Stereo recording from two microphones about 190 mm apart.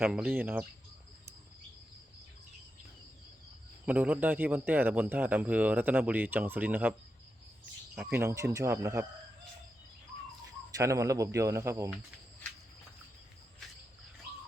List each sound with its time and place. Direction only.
0.0 s a man's voice: 10° right (ahead or behind)
3.8 s a man's voice: 10° right (ahead or behind)
10.8 s a man's voice: 15° right (ahead or behind)